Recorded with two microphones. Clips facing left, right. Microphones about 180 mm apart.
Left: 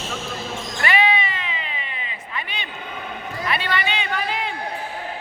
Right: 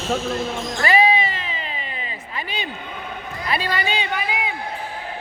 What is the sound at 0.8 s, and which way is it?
Cat, 35° right (ahead or behind).